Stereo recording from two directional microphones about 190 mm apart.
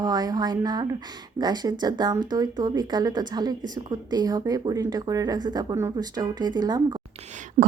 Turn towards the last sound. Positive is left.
turn(degrees=-25)  # may be behind; listen again after turning